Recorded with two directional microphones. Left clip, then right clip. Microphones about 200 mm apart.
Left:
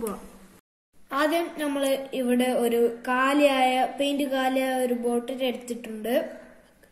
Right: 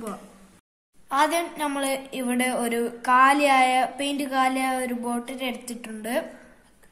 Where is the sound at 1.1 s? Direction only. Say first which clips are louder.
Right 2 dB; 50° right (ahead or behind).